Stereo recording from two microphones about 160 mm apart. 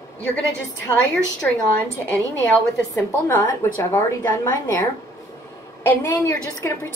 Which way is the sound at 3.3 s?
15° left (ahead or behind).